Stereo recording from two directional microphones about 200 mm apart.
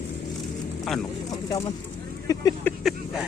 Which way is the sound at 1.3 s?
20° left (ahead or behind).